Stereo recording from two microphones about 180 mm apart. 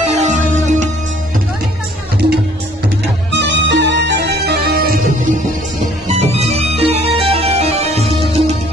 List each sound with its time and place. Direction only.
0.0 s music: 40° right (ahead or behind)
3.3 s music: 75° right (ahead or behind); by 4.9 s 60° right (ahead or behind)
6.1 s music: 35° right (ahead or behind)